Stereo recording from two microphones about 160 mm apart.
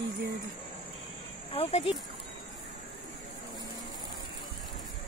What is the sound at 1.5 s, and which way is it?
Speech, 40° left (ahead or behind).